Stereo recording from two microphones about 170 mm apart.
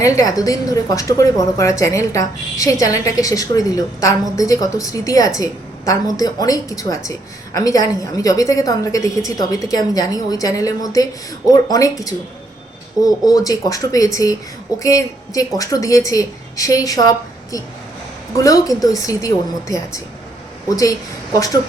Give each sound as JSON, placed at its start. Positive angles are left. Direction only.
{"t": 0.0, "sound": "a woman's voice", "side_deg": 20}